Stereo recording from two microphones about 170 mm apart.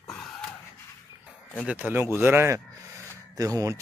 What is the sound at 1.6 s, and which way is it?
Speech, 10° right (ahead or behind).